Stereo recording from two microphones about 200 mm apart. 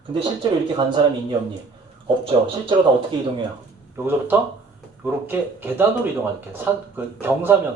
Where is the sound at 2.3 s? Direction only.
25° right (ahead or behind).